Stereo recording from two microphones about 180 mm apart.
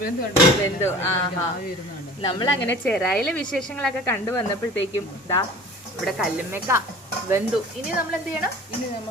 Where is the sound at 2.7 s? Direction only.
10° left (ahead or behind).